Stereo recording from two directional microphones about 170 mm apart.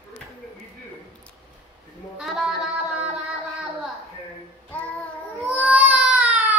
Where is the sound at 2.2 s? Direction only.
5° right (ahead or behind).